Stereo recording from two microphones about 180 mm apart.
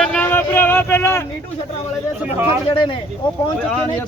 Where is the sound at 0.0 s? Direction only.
5° left (ahead or behind).